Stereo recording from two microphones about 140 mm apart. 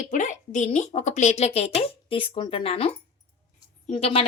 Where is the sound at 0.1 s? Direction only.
60° left (ahead or behind); by 2.9 s 45° left (ahead or behind).